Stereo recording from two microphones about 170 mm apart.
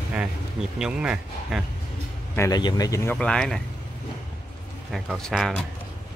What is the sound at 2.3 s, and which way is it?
Speech, 20° left (ahead or behind).